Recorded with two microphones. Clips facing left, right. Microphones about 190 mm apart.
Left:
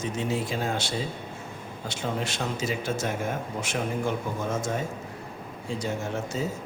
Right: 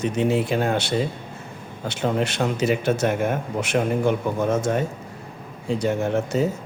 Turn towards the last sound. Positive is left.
turn(degrees=-65)  # may be behind; listen again after turning